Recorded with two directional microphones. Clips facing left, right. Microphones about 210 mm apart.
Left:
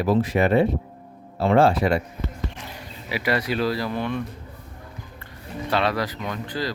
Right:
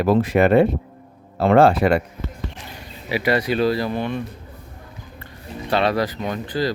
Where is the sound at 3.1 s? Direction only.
25° right (ahead or behind).